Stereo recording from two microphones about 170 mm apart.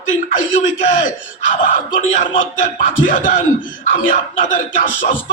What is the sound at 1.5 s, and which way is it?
Speech, 50° left (ahead or behind).